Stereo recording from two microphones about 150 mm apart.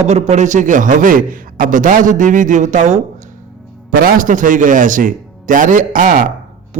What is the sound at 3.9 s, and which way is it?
A man's voice, 65° right (ahead or behind).